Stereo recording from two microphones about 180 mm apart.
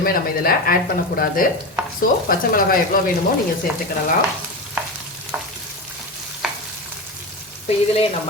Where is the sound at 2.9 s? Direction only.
55° left (ahead or behind).